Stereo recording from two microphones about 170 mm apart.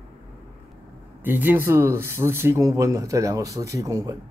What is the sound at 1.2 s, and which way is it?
Speech, 10° right (ahead or behind).